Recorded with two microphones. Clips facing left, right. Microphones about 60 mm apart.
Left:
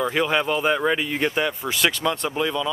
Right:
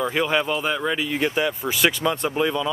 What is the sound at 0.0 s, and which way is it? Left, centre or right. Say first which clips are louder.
Speech: even; centre.